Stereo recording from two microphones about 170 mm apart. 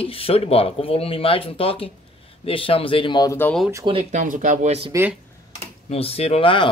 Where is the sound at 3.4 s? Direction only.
10° left (ahead or behind).